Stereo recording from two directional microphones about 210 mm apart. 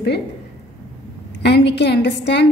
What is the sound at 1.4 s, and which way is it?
A woman's voice, 55° left (ahead or behind).